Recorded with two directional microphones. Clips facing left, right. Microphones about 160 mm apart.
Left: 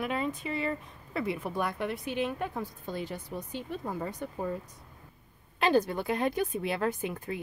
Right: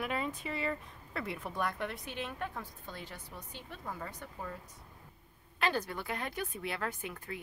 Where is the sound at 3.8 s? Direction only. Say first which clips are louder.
Left 8 dB; 25° left (ahead or behind).